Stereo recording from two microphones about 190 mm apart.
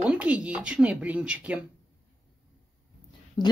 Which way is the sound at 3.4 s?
20° left (ahead or behind).